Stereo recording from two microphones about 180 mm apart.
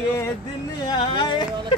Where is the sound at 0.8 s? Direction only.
25° left (ahead or behind).